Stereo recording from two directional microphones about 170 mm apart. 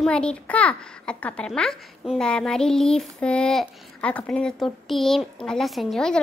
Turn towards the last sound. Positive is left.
turn(degrees=5)  # may be behind; listen again after turning